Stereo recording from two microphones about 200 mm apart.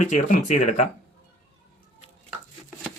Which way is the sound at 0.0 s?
35° left (ahead or behind).